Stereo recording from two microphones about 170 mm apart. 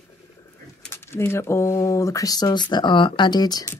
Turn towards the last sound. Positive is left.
turn(degrees=20)  # may be behind; listen again after turning